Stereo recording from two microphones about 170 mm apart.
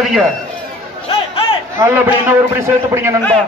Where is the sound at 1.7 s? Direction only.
10° right (ahead or behind).